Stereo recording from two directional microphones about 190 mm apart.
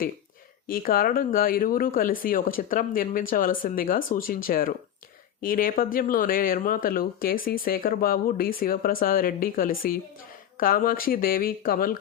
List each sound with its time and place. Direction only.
0.7 s speech: 50° left (ahead or behind)